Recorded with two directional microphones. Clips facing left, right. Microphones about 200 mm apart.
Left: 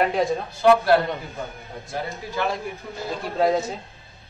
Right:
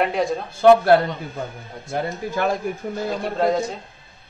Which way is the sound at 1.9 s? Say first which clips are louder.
Right 6 dB; 50° right (ahead or behind).